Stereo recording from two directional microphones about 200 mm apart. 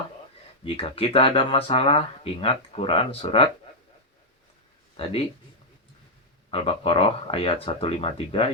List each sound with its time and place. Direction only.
0.6 s speech: 30° left (ahead or behind)
4.9 s speech: 30° left (ahead or behind)
6.5 s speech: 30° left (ahead or behind)